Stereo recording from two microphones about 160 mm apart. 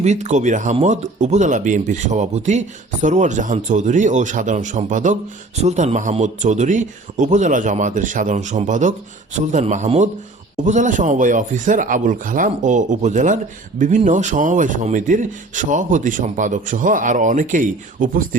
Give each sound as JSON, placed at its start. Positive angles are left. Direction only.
{"t": 0.0, "sound": "speech", "side_deg": -45}